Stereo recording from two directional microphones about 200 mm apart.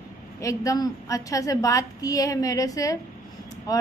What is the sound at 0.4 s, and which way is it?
A woman's voice, 15° left (ahead or behind).